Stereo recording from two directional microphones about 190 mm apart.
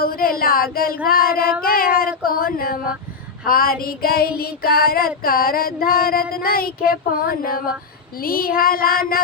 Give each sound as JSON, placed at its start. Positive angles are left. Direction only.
{"t": 0.0, "sound": "child singing", "side_deg": 50}
{"t": 1.6, "sound": "speech", "side_deg": 50}
{"t": 2.0, "sound": "a sound", "side_deg": 50}
{"t": 3.4, "sound": "child singing", "side_deg": 50}